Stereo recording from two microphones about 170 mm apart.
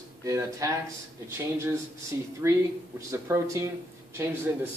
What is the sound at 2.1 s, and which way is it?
Speech, 20° right (ahead or behind).